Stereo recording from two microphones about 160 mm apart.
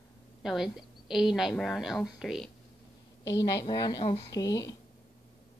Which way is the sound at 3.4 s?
25° left (ahead or behind).